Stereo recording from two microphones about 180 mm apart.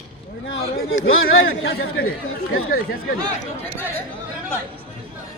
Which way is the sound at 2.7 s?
55° left (ahead or behind).